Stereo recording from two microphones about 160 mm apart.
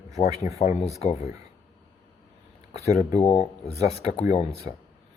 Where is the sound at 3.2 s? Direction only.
45° left (ahead or behind).